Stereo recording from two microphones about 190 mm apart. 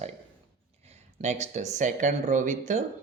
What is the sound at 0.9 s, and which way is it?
Speech, 35° right (ahead or behind).